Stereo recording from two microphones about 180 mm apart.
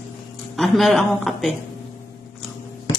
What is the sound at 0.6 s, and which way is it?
Speech, centre (ahead or behind).